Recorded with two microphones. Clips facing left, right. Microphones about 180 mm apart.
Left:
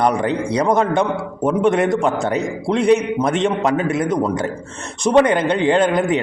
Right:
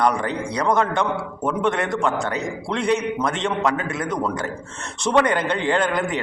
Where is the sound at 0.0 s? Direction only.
20° left (ahead or behind).